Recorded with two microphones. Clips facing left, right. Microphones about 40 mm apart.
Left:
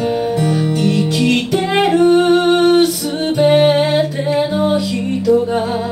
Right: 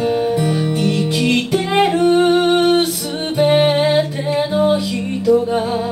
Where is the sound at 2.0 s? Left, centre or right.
Right.